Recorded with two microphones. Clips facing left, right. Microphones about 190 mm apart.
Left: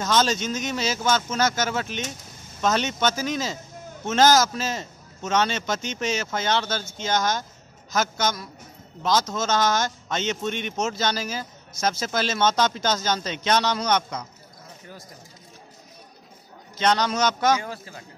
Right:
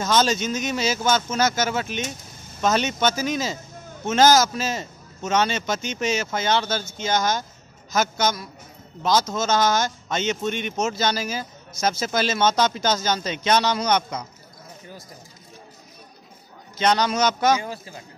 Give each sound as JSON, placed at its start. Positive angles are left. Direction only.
{"t": 0.0, "sound": "a man's voice", "side_deg": -5}
{"t": 16.7, "sound": "a man's voice", "side_deg": -10}